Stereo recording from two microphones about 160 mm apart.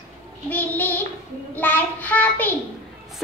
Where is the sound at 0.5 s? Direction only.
10° left (ahead or behind).